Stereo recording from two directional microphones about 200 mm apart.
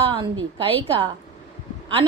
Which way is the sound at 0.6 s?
25° right (ahead or behind).